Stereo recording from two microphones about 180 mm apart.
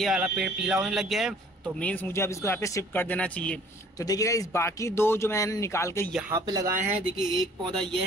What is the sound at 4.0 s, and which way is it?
Speech, 20° left (ahead or behind).